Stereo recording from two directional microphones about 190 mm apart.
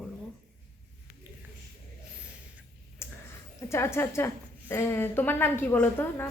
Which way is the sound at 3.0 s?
15° left (ahead or behind).